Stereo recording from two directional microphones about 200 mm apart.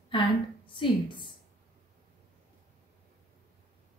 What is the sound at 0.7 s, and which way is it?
Speech, 25° left (ahead or behind).